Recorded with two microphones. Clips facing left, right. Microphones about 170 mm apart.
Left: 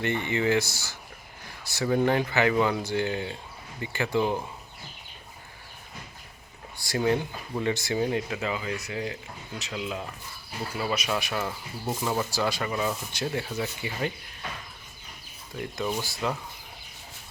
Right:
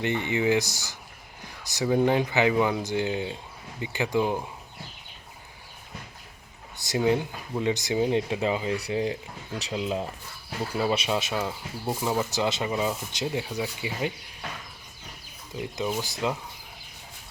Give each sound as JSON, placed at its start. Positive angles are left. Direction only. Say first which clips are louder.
{"t": 0.0, "sound": "speech", "louder": "right 1 dB", "side_deg": -15}
{"t": 6.8, "sound": "speech", "louder": "right 1 dB", "side_deg": -15}
{"t": 15.5, "sound": "speech", "louder": "right 1 dB", "side_deg": -15}